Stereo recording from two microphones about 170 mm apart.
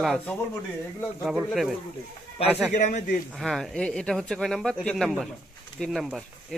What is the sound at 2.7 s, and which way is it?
Speech, 45° left (ahead or behind).